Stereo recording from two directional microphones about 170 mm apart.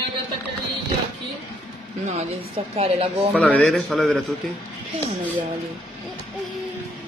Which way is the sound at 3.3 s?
5° left (ahead or behind).